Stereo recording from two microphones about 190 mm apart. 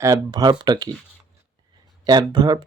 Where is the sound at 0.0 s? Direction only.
20° right (ahead or behind).